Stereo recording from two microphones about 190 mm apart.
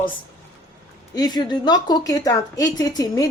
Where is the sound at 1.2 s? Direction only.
20° left (ahead or behind).